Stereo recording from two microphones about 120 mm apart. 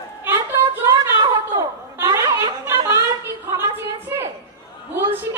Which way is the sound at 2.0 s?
25° right (ahead or behind).